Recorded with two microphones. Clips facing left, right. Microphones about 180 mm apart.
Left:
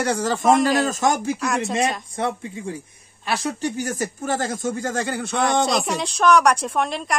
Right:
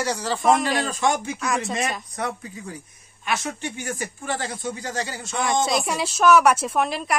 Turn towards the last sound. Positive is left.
turn(degrees=-5)  # may be behind; listen again after turning